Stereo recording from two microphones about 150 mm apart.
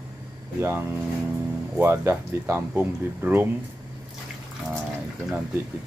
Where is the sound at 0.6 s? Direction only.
15° right (ahead or behind).